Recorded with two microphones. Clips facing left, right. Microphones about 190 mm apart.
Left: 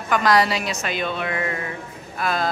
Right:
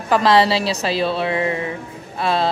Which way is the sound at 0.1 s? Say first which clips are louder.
Right 4 dB; 30° right (ahead or behind).